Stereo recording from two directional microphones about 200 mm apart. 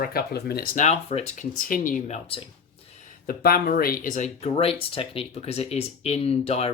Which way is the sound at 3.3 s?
50° left (ahead or behind).